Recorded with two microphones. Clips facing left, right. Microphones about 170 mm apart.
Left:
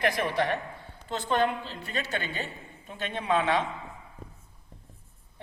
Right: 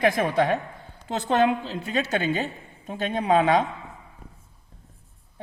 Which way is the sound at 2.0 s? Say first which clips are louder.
Right 8 dB; 45° right (ahead or behind).